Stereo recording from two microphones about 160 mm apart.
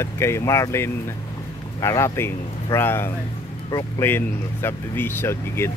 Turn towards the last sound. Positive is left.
turn(degrees=15)  # may be behind; listen again after turning